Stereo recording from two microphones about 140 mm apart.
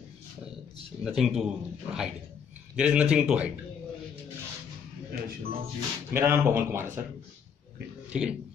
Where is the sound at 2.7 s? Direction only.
5° right (ahead or behind).